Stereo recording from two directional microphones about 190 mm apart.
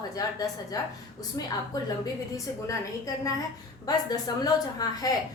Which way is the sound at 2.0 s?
15° left (ahead or behind).